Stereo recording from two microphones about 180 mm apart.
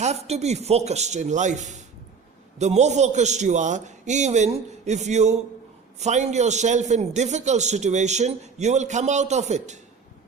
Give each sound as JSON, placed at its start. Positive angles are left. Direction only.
{"t": 0.0, "sound": "a man's voice", "side_deg": -35}